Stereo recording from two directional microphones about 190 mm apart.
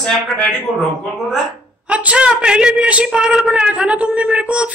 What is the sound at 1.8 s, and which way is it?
A woman's voice, 5° right (ahead or behind).